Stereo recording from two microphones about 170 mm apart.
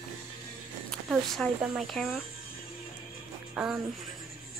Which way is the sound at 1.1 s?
Centre (ahead or behind).